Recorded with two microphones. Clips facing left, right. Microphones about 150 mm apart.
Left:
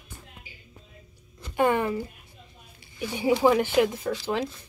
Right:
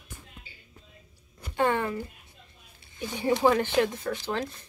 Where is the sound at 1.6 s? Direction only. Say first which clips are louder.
Left 3 dB; 15° left (ahead or behind).